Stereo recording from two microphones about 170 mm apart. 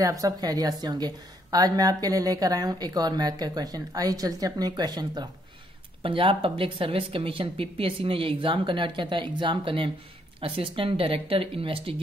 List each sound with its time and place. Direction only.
0.0 s a woman's voice: 20° right (ahead or behind)